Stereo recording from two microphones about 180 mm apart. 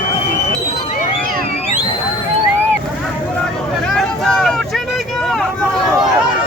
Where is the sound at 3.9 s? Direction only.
5° left (ahead or behind).